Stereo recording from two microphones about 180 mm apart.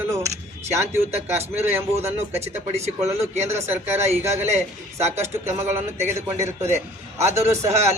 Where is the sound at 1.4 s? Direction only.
35° right (ahead or behind).